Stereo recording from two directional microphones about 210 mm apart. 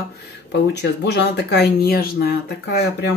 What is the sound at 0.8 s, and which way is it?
Speech, 55° left (ahead or behind).